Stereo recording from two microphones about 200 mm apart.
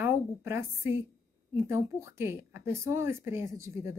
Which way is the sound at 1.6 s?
15° right (ahead or behind).